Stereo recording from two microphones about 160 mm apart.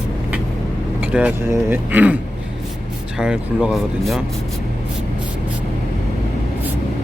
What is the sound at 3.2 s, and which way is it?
Speech, 5° right (ahead or behind).